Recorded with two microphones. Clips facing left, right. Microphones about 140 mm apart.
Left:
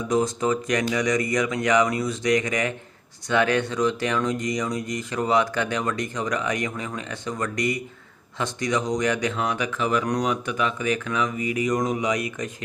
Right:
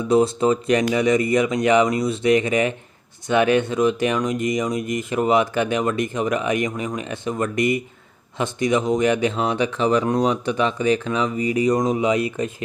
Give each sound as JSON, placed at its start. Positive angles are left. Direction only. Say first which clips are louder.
{"t": 0.1, "sound": "speech", "louder": "right 5 dB", "side_deg": -25}